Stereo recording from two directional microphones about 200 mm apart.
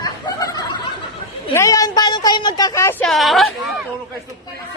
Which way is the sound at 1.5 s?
15° left (ahead or behind).